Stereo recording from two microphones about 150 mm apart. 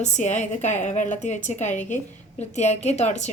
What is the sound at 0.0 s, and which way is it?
A woman's voice, 55° left (ahead or behind).